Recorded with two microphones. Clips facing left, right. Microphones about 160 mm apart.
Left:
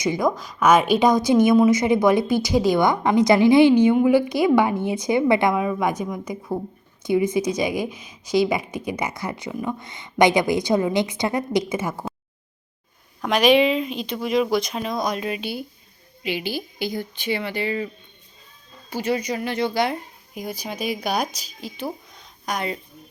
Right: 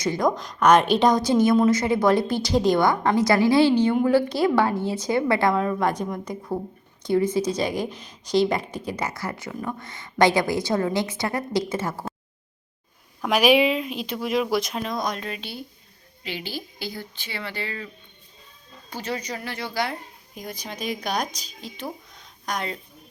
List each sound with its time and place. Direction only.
0.0 s a woman's voice: 10° left (ahead or behind)
7.0 s a woman's voice: 15° left (ahead or behind)
13.2 s a woman's voice: 5° right (ahead or behind); by 17.8 s 15° left (ahead or behind)
18.9 s a woman's voice: 10° left (ahead or behind)
20.3 s a woman's voice: 10° left (ahead or behind)